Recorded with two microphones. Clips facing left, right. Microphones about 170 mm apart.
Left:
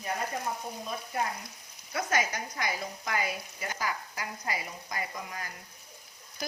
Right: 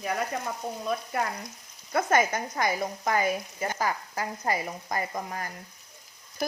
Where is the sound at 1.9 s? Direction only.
55° right (ahead or behind).